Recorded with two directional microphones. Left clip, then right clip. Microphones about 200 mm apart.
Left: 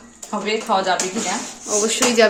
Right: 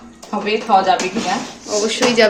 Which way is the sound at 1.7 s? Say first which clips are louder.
Right 2 dB; 30° left (ahead or behind).